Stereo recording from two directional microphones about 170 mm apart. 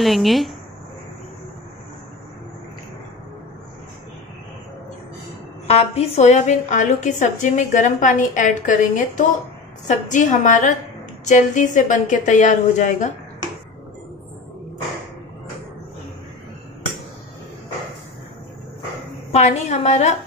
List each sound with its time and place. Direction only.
0.0 s a woman's voice: centre (ahead or behind)
5.7 s a woman's voice: 40° left (ahead or behind)
19.3 s a woman's voice: 40° left (ahead or behind)